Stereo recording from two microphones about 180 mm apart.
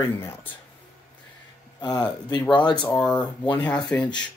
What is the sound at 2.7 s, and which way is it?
Speech, 5° left (ahead or behind).